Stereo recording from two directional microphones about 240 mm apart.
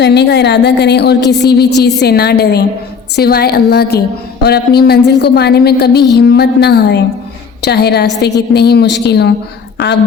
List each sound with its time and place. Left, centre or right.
0.0 s a woman's voice: left